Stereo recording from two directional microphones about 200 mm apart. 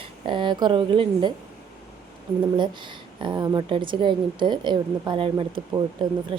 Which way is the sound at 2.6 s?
25° right (ahead or behind).